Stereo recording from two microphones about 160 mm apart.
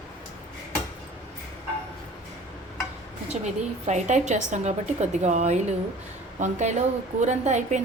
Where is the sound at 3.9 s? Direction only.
45° right (ahead or behind).